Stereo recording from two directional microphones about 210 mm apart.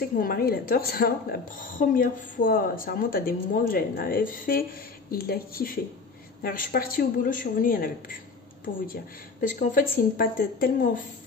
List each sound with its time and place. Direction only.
0.1 s speech: 45° left (ahead or behind)